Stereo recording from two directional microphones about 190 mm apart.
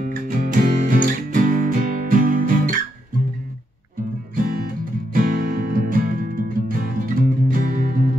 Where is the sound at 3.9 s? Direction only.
50° right (ahead or behind).